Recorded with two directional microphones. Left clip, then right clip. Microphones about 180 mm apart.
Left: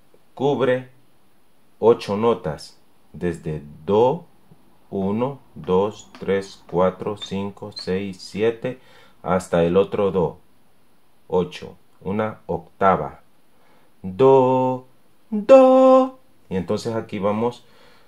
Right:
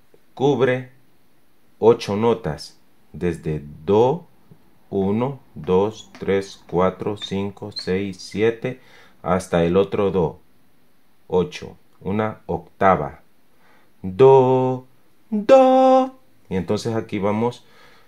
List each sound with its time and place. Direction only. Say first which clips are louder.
0.3 s speech: right 1 dB; 40° right (ahead or behind)
14.1 s speech: right 2 dB; 45° right (ahead or behind)